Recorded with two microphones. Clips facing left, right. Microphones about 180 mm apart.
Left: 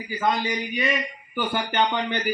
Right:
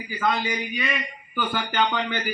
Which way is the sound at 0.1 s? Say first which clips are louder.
Left 1 dB; 20° left (ahead or behind).